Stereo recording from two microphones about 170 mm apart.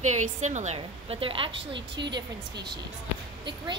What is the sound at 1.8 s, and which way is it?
Speech, 90° right.